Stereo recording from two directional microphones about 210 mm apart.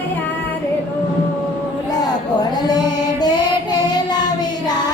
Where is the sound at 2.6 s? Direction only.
20° left (ahead or behind).